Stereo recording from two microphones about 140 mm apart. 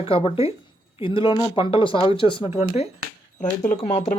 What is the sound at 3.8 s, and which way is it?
Speech, 40° left (ahead or behind).